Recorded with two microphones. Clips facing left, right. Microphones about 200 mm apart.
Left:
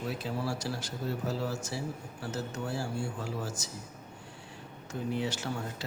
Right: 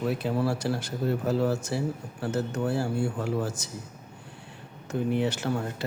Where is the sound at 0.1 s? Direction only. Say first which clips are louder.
Right 7 dB; 60° right (ahead or behind).